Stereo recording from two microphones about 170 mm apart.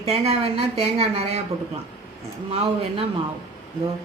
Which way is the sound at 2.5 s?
35° right (ahead or behind).